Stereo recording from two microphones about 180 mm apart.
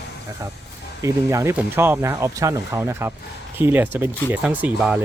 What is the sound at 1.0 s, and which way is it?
Speech, 15° right (ahead or behind).